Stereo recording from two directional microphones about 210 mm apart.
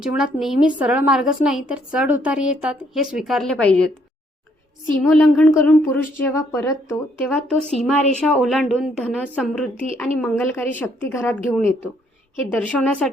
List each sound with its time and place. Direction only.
0.0 s a woman's voice: 5° right (ahead or behind)
5.0 s speech: 5° left (ahead or behind)
7.6 s speech: 30° right (ahead or behind)
8.2 s a woman's voice: 5° left (ahead or behind)